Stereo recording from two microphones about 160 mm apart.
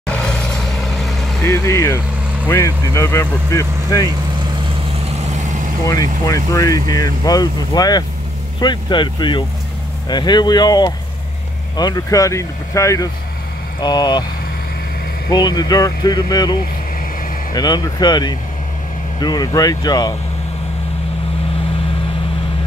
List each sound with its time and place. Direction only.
0.0 s vehicle: 5° left (ahead or behind)
1.4 s speech: 15° left (ahead or behind)
5.2 s vehicle: 45° right (ahead or behind)
6.2 s speech: 20° left (ahead or behind)
15.2 s speech: 25° left (ahead or behind)